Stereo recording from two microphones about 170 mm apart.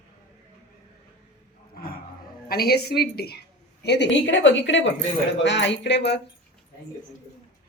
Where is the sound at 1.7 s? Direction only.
60° left (ahead or behind).